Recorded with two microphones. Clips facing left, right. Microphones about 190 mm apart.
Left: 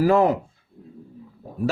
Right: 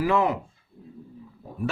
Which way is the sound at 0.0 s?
40° left (ahead or behind).